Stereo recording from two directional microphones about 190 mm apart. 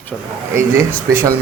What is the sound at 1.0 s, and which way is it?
Speech, 15° right (ahead or behind).